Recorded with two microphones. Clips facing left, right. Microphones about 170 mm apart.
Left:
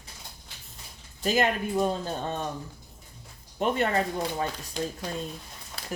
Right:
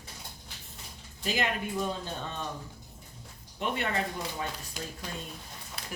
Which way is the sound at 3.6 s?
40° left (ahead or behind).